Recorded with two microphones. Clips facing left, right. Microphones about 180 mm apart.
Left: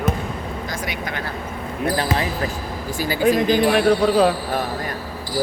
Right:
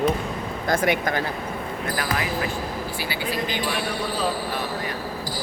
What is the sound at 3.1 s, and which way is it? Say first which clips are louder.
Speech: left 13 dB; 45° left (ahead or behind).